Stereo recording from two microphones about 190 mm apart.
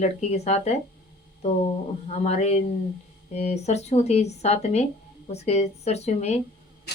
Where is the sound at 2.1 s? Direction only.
35° left (ahead or behind).